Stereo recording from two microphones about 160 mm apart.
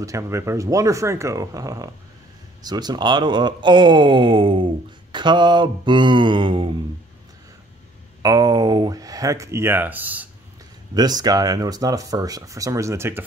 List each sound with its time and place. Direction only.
0.0 s speech: 20° right (ahead or behind)
8.2 s speech: 25° right (ahead or behind)
11.0 s speech: 25° right (ahead or behind)